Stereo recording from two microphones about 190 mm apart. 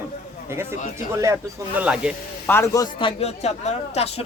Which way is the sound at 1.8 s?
5° right (ahead or behind).